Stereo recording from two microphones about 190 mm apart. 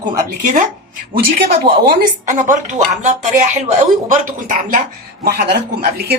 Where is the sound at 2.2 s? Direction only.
40° right (ahead or behind).